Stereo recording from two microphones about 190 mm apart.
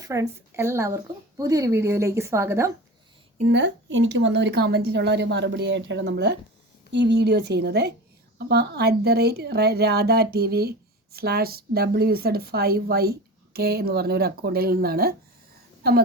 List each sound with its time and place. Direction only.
0.0 s a woman's voice: 15° right (ahead or behind)
3.5 s speech: 75° right (ahead or behind); by 16.0 s 55° right (ahead or behind)